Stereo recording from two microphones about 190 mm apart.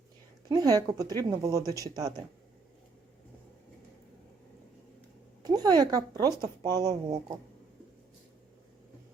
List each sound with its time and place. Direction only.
0.4 s speech: 20° right (ahead or behind)
5.4 s speech: 20° right (ahead or behind)